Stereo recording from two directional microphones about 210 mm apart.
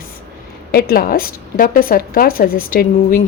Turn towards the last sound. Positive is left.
turn(degrees=40)  # may be behind; listen again after turning